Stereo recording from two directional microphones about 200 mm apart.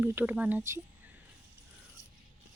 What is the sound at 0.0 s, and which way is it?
Speech, 10° right (ahead or behind).